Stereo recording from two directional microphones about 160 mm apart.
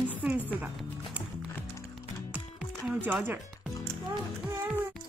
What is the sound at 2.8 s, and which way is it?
Speech, 10° right (ahead or behind).